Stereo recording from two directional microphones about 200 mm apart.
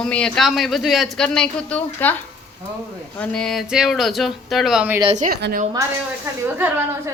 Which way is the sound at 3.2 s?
5° left (ahead or behind).